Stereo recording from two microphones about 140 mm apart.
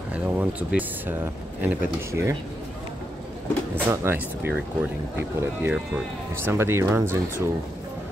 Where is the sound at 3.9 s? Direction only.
15° right (ahead or behind).